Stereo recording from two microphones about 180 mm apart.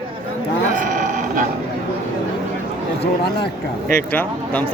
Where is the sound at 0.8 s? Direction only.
45° right (ahead or behind).